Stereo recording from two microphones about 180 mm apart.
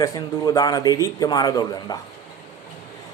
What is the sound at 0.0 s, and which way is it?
A man's voice, 20° left (ahead or behind).